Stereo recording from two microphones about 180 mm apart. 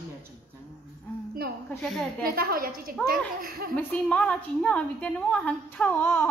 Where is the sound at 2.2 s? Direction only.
55° right (ahead or behind).